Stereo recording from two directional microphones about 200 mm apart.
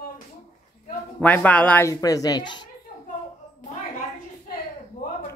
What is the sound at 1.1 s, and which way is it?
A woman's voice, 10° left (ahead or behind).